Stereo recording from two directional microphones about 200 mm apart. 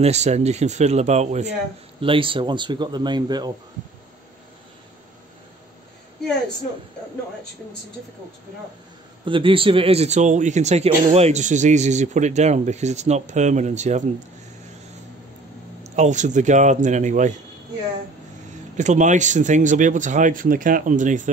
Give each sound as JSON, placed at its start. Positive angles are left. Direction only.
{"t": 0.0, "sound": "a man's voice", "side_deg": -35}
{"t": 9.2, "sound": "a man's voice", "side_deg": -25}
{"t": 15.8, "sound": "a man's voice", "side_deg": -35}
{"t": 18.8, "sound": "a man's voice", "side_deg": -35}